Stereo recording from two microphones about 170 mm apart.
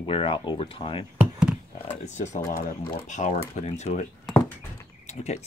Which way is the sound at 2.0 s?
45° left (ahead or behind).